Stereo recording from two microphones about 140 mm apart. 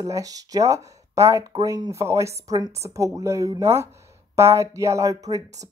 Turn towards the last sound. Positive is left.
turn(degrees=-25)  # may be behind; listen again after turning